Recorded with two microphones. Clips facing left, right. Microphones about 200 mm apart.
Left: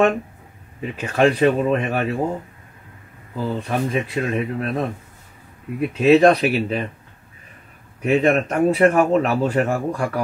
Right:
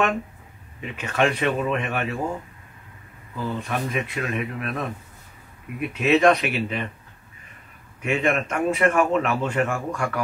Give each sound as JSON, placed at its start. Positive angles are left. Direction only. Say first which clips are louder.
{"t": 0.7, "sound": "speech", "louder": "left 4 dB", "side_deg": 35}
{"t": 3.3, "sound": "speech", "louder": "left 4 dB", "side_deg": 30}
{"t": 8.0, "sound": "speech", "louder": "left 6 dB", "side_deg": 35}